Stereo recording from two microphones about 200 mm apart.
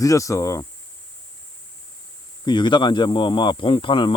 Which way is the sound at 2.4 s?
20° left (ahead or behind).